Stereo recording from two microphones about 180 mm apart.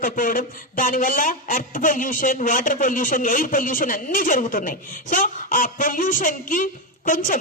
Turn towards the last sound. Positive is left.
turn(degrees=50)  # may be behind; listen again after turning